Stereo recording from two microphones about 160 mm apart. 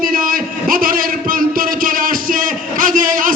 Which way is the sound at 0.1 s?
60° right (ahead or behind).